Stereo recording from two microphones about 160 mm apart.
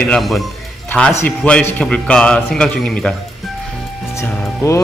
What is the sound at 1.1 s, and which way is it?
A man's voice, 10° left (ahead or behind).